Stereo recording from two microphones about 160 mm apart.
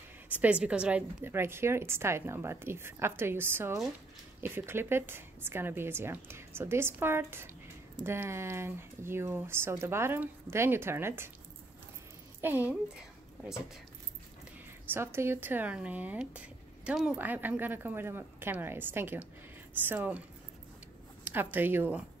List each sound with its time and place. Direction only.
0.3 s speech: 10° right (ahead or behind)
12.4 s a woman's voice: 10° right (ahead or behind)
15.0 s speech: 15° right (ahead or behind)